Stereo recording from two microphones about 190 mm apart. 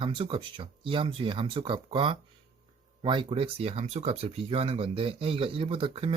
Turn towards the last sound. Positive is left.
turn(degrees=-30)  # may be behind; listen again after turning